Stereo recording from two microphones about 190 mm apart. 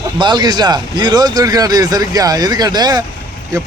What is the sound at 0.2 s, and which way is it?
A man's voice, 25° right (ahead or behind).